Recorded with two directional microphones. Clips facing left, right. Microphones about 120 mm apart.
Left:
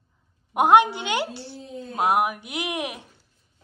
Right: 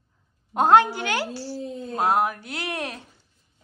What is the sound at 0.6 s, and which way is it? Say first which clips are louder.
A woman's voice: even; 15° left (ahead or behind).